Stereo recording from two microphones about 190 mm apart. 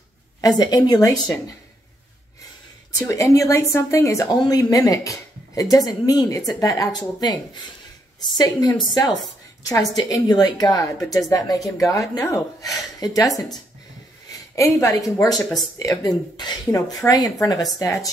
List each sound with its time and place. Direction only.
0.4 s speech: 20° left (ahead or behind)
3.0 s a woman's voice: 15° left (ahead or behind)
14.5 s a woman's voice: 15° left (ahead or behind)